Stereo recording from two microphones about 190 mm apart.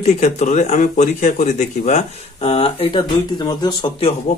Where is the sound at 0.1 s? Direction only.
40° left (ahead or behind); by 4.1 s 25° left (ahead or behind).